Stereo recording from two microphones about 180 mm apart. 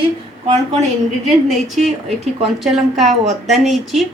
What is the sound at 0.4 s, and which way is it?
Speech, 35° right (ahead or behind).